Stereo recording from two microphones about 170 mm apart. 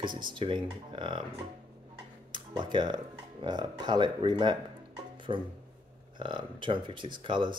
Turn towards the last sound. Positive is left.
turn(degrees=-30)  # may be behind; listen again after turning